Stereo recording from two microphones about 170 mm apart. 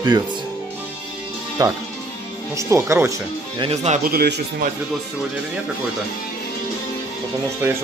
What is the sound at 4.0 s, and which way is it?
Speech, 60° right (ahead or behind).